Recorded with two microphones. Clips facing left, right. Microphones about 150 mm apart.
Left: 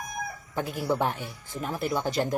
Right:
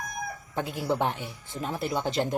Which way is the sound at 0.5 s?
25° right (ahead or behind).